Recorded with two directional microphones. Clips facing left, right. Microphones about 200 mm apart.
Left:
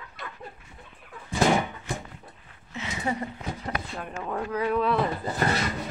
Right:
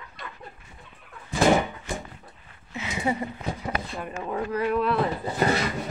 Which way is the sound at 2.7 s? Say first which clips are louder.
Right 3 dB; 10° right (ahead or behind).